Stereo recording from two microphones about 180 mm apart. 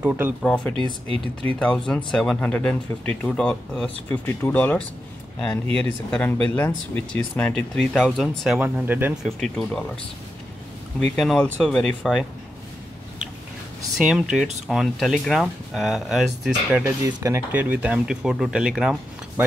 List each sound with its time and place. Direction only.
0.0 s speech: 5° right (ahead or behind)
0.4 s speech: 5° left (ahead or behind)
0.7 s speech: 30° right (ahead or behind)
1.9 s speech: 5° left (ahead or behind)
8.5 s speech: 10° right (ahead or behind)
11.1 s speech: 5° left (ahead or behind)
13.9 s speech: 5° right (ahead or behind)
16.8 s speech: 15° right (ahead or behind)